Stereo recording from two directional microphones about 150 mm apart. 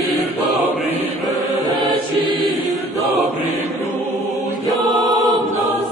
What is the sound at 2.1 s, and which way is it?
Choir, 90° right.